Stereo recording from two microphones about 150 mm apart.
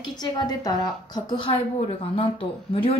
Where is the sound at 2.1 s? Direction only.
35° left (ahead or behind).